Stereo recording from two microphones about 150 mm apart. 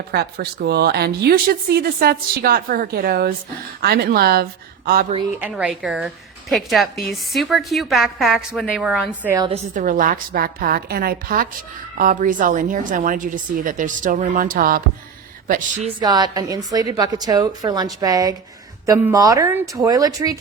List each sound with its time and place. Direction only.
0.1 s a woman's voice: 90° right
4.9 s a woman's voice: 75° right (ahead or behind)
5.4 s a woman's voice: 5° right (ahead or behind)
9.7 s a woman's voice: 65° right (ahead or behind); by 11.4 s 80° right
11.9 s a woman's voice: 65° right (ahead or behind)
16.0 s a woman's voice: 30° right (ahead or behind)